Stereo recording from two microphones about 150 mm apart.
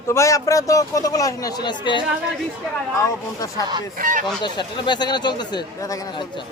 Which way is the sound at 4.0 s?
60° right (ahead or behind).